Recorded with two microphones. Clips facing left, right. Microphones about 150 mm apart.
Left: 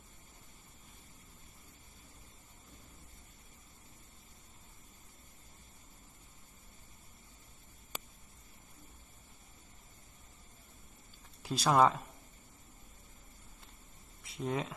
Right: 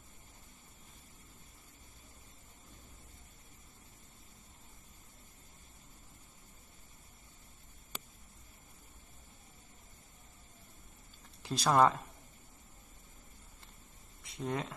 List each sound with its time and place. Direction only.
11.4 s speech: centre (ahead or behind)
14.2 s speech: centre (ahead or behind)